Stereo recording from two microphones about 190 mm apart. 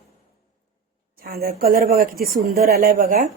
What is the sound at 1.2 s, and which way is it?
A woman's voice, 50° right (ahead or behind).